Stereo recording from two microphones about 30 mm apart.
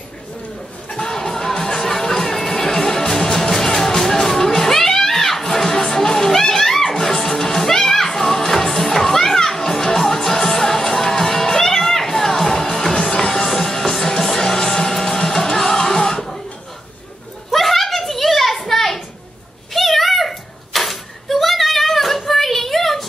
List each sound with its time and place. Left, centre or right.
0.8 s music: centre
12.4 s music: left
17.5 s a sound: centre